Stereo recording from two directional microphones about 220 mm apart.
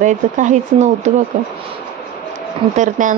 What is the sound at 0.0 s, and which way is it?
Speech, 35° right (ahead or behind).